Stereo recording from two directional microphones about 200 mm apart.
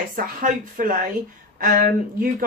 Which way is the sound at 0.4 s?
40° right (ahead or behind).